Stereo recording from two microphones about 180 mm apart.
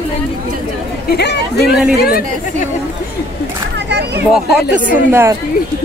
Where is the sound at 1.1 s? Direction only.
65° left (ahead or behind).